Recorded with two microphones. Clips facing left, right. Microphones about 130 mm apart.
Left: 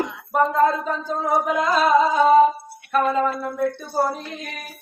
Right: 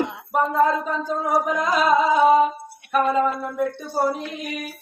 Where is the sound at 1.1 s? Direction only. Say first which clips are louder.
Left 1 dB; 10° right (ahead or behind).